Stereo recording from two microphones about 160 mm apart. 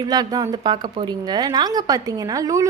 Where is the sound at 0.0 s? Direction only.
25° right (ahead or behind).